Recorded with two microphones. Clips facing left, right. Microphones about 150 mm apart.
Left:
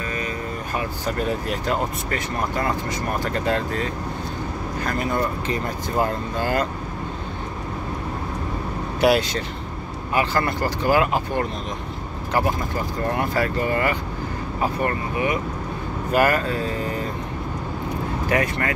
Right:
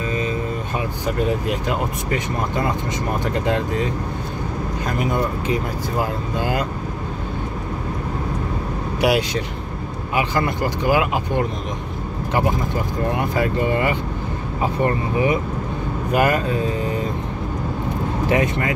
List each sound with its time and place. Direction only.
0.7 s speech: 15° right (ahead or behind)
9.0 s speech: 15° right (ahead or behind)
13.1 s speech: 15° right (ahead or behind)
16.1 s speech: 20° right (ahead or behind)
18.3 s speech: 20° right (ahead or behind)